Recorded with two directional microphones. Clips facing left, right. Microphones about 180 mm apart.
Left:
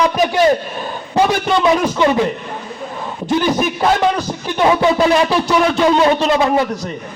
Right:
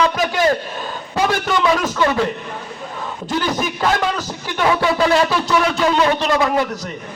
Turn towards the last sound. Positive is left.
turn(degrees=20)  # may be behind; listen again after turning